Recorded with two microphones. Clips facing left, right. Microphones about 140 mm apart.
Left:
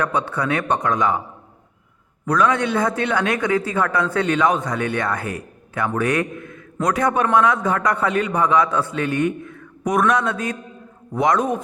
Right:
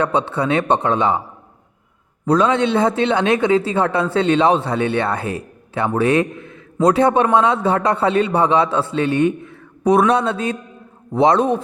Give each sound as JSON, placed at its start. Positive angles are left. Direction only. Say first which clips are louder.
{"t": 0.0, "sound": "a man's voice", "louder": "right 4 dB", "side_deg": -25}
{"t": 2.2, "sound": "a man's voice", "louder": "right 3 dB", "side_deg": -25}